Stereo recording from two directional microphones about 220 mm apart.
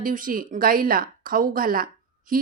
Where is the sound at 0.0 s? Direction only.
40° right (ahead or behind).